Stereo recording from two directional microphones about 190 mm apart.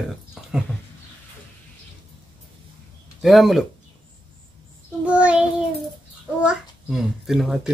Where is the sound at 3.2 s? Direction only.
Centre (ahead or behind).